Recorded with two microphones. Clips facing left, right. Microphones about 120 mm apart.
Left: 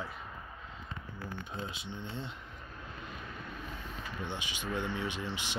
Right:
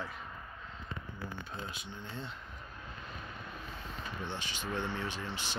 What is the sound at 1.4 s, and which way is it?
Speech, 20° left (ahead or behind).